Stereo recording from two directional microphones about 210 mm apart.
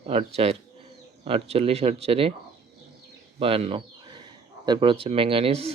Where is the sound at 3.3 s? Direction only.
25° right (ahead or behind).